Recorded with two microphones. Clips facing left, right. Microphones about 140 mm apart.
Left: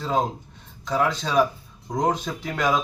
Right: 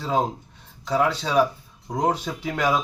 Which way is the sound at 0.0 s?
5° right (ahead or behind).